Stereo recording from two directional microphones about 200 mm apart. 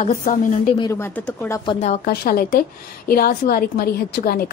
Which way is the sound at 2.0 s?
45° left (ahead or behind).